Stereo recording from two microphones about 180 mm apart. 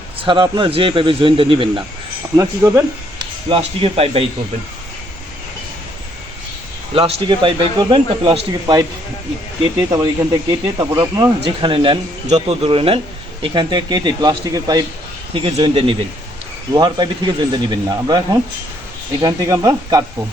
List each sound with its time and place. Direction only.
0.2 s speech: 25° right (ahead or behind)
2.3 s speech: 15° right (ahead or behind)
3.5 s speech: 30° right (ahead or behind)
6.9 s speech: 30° right (ahead or behind)